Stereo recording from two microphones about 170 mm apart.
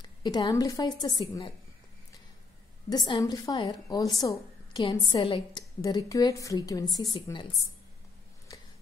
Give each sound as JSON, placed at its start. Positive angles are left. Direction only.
{"t": 0.0, "sound": "a woman's voice", "side_deg": 25}
{"t": 3.1, "sound": "speech", "side_deg": 25}